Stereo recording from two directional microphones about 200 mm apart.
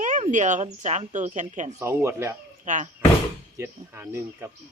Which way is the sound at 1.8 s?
15° right (ahead or behind).